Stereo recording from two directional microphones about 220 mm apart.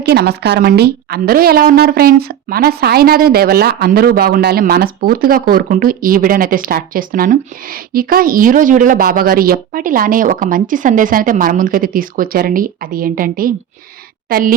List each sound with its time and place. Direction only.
0.0 s a woman's voice: 45° right (ahead or behind)